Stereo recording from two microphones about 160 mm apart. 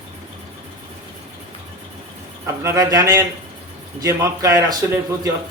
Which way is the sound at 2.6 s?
20° right (ahead or behind).